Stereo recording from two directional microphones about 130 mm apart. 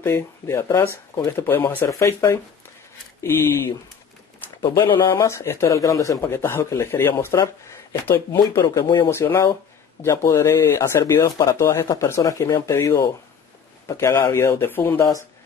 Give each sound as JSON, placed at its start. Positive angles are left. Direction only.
{"t": 0.0, "sound": "speech", "side_deg": 20}
{"t": 4.6, "sound": "speech", "side_deg": 35}
{"t": 5.1, "sound": "speech", "side_deg": 20}
{"t": 8.6, "sound": "speech", "side_deg": 35}
{"t": 9.0, "sound": "speech", "side_deg": 20}